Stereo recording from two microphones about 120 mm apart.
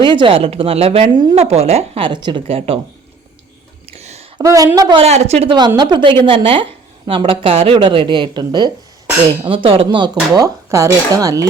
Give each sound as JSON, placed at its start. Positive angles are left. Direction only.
{"t": 0.0, "sound": "speech", "side_deg": -40}
{"t": 1.1, "sound": "speech", "side_deg": -35}
{"t": 1.4, "sound": "speech", "side_deg": -60}
{"t": 2.0, "sound": "speech", "side_deg": -40}
{"t": 3.8, "sound": "a sound", "side_deg": -60}
{"t": 4.4, "sound": "a woman's voice", "side_deg": -30}
{"t": 4.9, "sound": "speech", "side_deg": -65}
{"t": 5.5, "sound": "speech", "side_deg": -40}
{"t": 9.5, "sound": "speech", "side_deg": -50}